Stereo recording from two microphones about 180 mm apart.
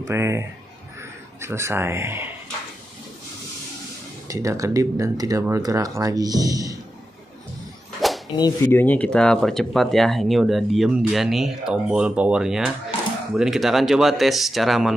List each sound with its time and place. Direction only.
0.0 s a man's voice: 15° right (ahead or behind)
4.3 s speech: 15° right (ahead or behind)
8.0 s a sound: centre (ahead or behind)
8.4 s speech: 20° left (ahead or behind); by 15.0 s centre (ahead or behind)